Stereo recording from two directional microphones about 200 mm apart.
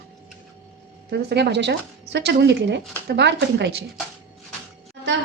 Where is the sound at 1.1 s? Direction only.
55° right (ahead or behind).